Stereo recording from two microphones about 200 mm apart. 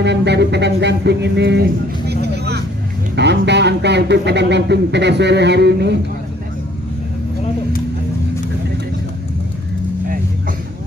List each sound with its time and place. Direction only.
0.0 s music: 60° right (ahead or behind)
3.2 s speech: 60° right (ahead or behind)